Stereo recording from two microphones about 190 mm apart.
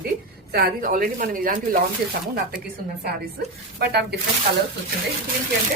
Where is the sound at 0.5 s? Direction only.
45° right (ahead or behind).